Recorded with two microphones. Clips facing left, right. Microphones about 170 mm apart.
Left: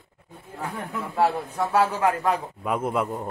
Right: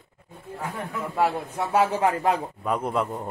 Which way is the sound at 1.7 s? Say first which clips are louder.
Right 1 dB; 20° right (ahead or behind).